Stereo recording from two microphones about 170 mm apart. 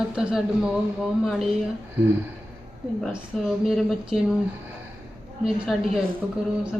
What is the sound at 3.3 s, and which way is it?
Speech, centre (ahead or behind).